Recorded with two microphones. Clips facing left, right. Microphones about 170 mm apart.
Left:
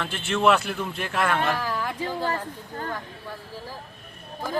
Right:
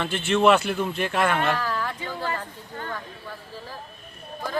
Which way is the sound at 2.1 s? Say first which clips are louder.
Left 2 dB; 15° left (ahead or behind).